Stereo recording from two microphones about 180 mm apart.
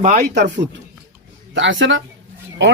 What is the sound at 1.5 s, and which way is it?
Speech, 90° right.